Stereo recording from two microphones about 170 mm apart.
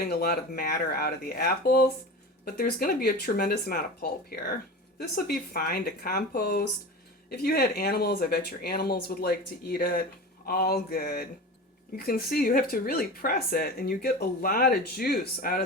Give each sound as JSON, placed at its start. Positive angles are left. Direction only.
{"t": 0.1, "sound": "speech", "side_deg": 65}